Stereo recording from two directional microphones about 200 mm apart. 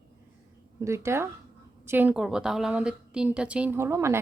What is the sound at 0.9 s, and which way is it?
A woman's voice, 15° right (ahead or behind).